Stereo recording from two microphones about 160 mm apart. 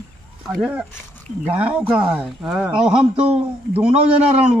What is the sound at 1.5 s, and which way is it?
A man's voice, 10° right (ahead or behind).